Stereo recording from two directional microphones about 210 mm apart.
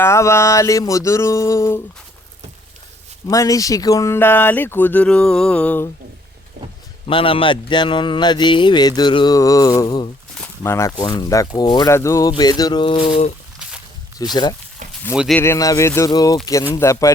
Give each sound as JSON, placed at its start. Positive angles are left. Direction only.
{"t": 0.0, "sound": "speech", "side_deg": 15}
{"t": 3.2, "sound": "speech", "side_deg": 15}
{"t": 7.1, "sound": "speech", "side_deg": 25}
{"t": 14.2, "sound": "speech", "side_deg": 20}
{"t": 15.1, "sound": "speech", "side_deg": -5}
{"t": 15.4, "sound": "speech", "side_deg": 15}